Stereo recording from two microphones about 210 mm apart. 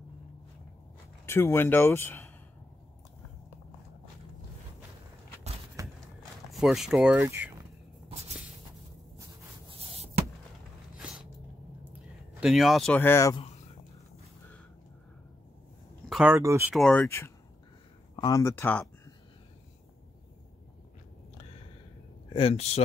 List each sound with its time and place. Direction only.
1.2 s speech: 10° left (ahead or behind)
5.8 s a sound: 15° right (ahead or behind)
6.6 s speech: centre (ahead or behind)
12.4 s speech: centre (ahead or behind)
16.1 s a sound: 5° right (ahead or behind)
16.3 s speech: 15° right (ahead or behind)
16.7 s speech: 5° left (ahead or behind)
22.3 s speech: 30° left (ahead or behind)